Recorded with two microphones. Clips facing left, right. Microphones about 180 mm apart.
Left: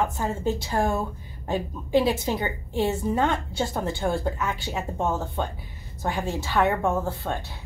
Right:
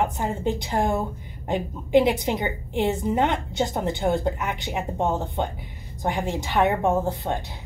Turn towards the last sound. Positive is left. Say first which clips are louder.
# right 3 dB
turn(degrees=-20)  # may be behind; listen again after turning